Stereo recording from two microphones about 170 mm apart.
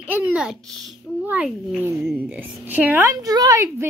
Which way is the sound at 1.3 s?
5° right (ahead or behind).